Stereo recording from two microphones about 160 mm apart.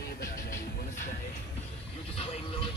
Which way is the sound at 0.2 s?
60° left (ahead or behind).